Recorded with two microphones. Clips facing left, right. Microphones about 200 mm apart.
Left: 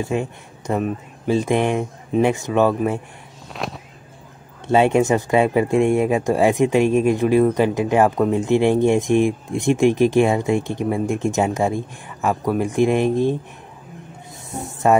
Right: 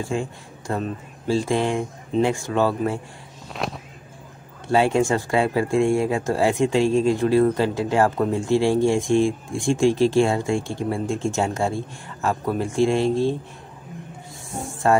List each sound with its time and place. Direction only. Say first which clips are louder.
0.0 s speech: left 3 dB; 20° left (ahead or behind)
3.5 s a sound: even; centre (ahead or behind)
4.6 s speech: left 3 dB; 20° left (ahead or behind)
14.6 s speech: left 3 dB; 20° left (ahead or behind)